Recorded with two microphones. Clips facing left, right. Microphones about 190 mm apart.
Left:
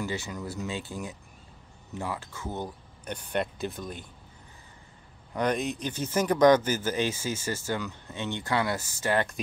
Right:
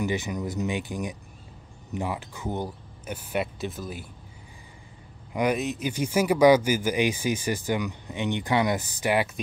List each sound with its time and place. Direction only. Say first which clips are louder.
0.0 s speech: right 5 dB; 20° right (ahead or behind)
5.3 s speech: right 2 dB; 10° right (ahead or behind)